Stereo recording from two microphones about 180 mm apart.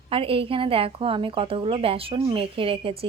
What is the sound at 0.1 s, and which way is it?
A woman's voice, 30° right (ahead or behind).